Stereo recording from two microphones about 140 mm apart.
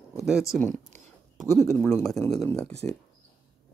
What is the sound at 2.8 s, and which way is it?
Speech, 15° left (ahead or behind).